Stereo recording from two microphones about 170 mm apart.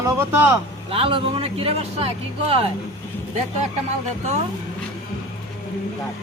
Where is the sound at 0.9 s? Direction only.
35° right (ahead or behind).